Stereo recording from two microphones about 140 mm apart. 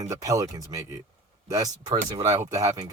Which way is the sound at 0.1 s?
25° right (ahead or behind).